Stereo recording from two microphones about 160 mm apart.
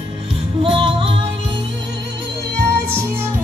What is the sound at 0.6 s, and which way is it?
Music, 35° right (ahead or behind).